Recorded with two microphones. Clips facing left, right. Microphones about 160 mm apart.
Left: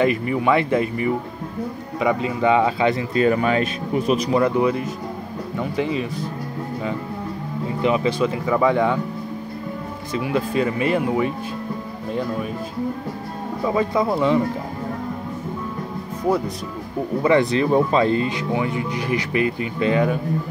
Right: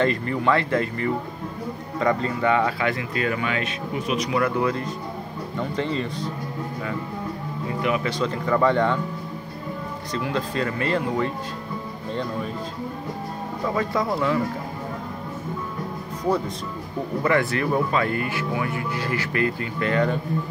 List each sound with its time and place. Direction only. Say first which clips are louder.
0.0 s speech: left 3 dB; 10° left (ahead or behind); by 4.4 s 35° left (ahead or behind)
4.4 s speech: left 4 dB; 20° left (ahead or behind)
7.8 s speech: left 5 dB; 25° left (ahead or behind)
8.1 s speech: left 3 dB; 10° left (ahead or behind)
10.1 s speech: left 5 dB; 15° left (ahead or behind)
13.7 s speech: left 4 dB; 15° left (ahead or behind)
17.2 s speech: left 5 dB; 20° left (ahead or behind)